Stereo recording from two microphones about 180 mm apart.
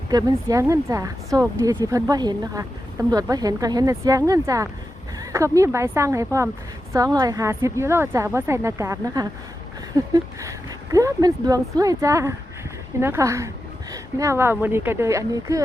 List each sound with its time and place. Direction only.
0.1 s a woman's voice: 20° right (ahead or behind)